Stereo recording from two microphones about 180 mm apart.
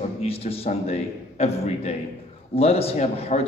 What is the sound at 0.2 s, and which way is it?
A man's voice, 35° left (ahead or behind).